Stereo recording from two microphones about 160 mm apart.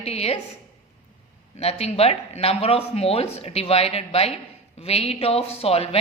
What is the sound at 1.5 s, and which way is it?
Speech, 40° left (ahead or behind).